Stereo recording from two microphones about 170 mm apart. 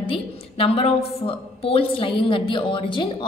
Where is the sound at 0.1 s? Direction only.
35° left (ahead or behind).